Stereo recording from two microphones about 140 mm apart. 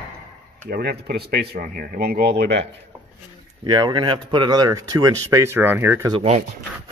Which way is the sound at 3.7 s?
30° right (ahead or behind).